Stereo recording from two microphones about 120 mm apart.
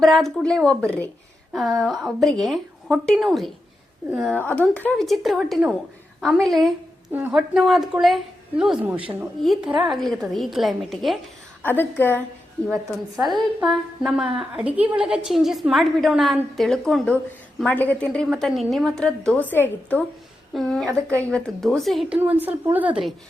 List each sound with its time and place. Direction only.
0.0 s a woman's voice: centre (ahead or behind)
4.4 s a woman's voice: 15° left (ahead or behind)
4.9 s a woman's voice: centre (ahead or behind)
7.1 s a woman's voice: 15° right (ahead or behind)
7.3 s a woman's voice: centre (ahead or behind)
11.6 s a woman's voice: 15° left (ahead or behind)
13.2 s a woman's voice: centre (ahead or behind); by 20.1 s 15° left (ahead or behind)
20.5 s a woman's voice: centre (ahead or behind)
22.2 s a woman's voice: 15° right (ahead or behind)